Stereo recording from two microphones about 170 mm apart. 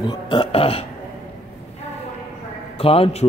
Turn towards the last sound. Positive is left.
turn(degrees=35)  # may be behind; listen again after turning